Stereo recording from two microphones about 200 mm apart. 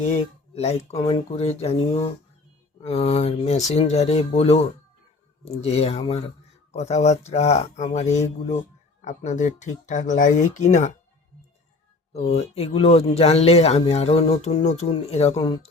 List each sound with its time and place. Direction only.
0.1 s speech: 30° left (ahead or behind)
12.1 s speech: 30° left (ahead or behind)